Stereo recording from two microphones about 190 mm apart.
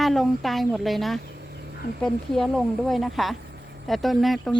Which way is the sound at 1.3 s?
60° right (ahead or behind).